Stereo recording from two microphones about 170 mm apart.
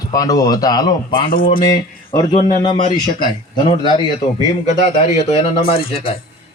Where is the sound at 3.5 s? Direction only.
25° left (ahead or behind).